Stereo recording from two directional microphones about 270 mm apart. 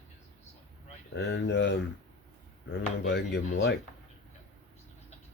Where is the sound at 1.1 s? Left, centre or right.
Left.